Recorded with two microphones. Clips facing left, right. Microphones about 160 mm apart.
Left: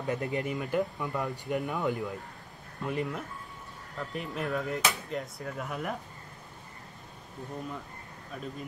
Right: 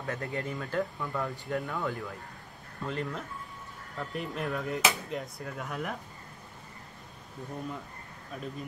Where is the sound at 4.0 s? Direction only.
Centre (ahead or behind).